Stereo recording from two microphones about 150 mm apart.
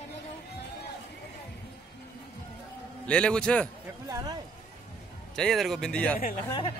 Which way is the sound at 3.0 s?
5° left (ahead or behind).